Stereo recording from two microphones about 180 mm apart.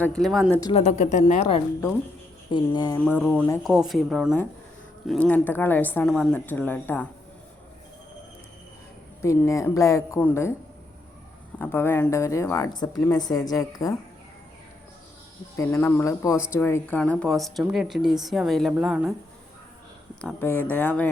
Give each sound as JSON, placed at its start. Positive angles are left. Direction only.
{"t": 0.0, "sound": "speech", "side_deg": 5}
{"t": 0.7, "sound": "a woman's voice", "side_deg": 40}
{"t": 2.5, "sound": "speech", "side_deg": 20}
{"t": 3.0, "sound": "a woman's voice", "side_deg": 5}
{"t": 9.2, "sound": "a woman's voice", "side_deg": 15}
{"t": 11.6, "sound": "a woman's voice", "side_deg": 10}
{"t": 15.5, "sound": "a woman's voice", "side_deg": 15}
{"t": 20.2, "sound": "a woman's voice", "side_deg": 10}